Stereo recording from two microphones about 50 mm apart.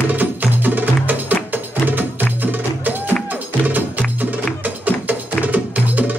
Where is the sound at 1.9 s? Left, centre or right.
Right.